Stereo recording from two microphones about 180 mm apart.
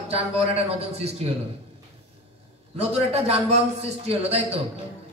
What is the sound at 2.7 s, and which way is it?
A man's voice, 35° right (ahead or behind).